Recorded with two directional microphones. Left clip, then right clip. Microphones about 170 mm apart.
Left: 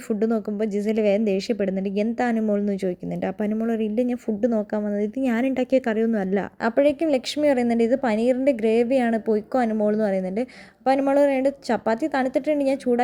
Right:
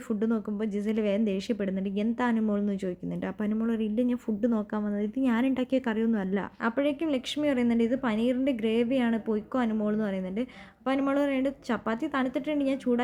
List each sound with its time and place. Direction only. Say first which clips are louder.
0.1 s a woman's voice: left 7 dB; 20° left (ahead or behind)